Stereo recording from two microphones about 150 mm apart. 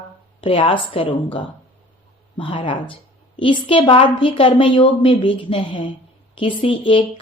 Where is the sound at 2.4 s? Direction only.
35° left (ahead or behind).